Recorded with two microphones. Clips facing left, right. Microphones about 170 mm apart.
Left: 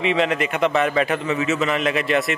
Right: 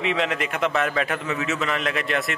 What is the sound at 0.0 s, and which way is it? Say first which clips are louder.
A man's voice: left 4 dB; centre (ahead or behind).